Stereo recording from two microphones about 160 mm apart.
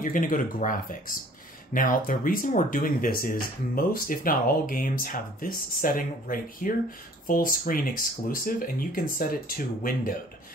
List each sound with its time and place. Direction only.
0.0 s speech: 60° left (ahead or behind)